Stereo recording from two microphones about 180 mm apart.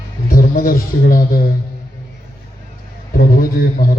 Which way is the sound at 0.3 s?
55° left (ahead or behind).